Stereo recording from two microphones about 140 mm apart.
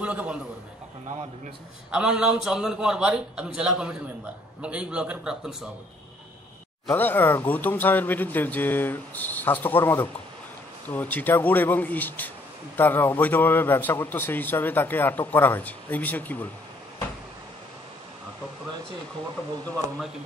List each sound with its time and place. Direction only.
0.0 s a man's voice: 10° right (ahead or behind)
1.0 s a man's voice: 55° right (ahead or behind)
1.9 s a man's voice: 5° right (ahead or behind)
6.9 s a man's voice: 15° left (ahead or behind)